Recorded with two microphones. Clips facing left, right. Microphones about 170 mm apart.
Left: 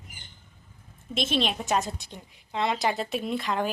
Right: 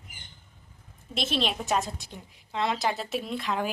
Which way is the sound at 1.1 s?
Centre (ahead or behind).